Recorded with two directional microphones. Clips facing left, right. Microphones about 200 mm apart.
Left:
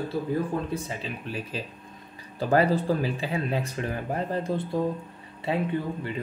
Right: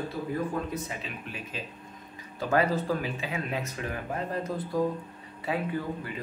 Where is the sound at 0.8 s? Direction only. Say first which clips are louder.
Left 4 dB; 35° left (ahead or behind).